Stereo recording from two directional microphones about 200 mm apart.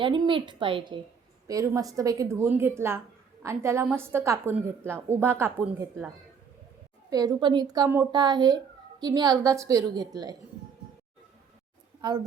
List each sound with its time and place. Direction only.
0.0 s a woman's voice: 25° right (ahead or behind)
7.1 s a woman's voice: 20° right (ahead or behind)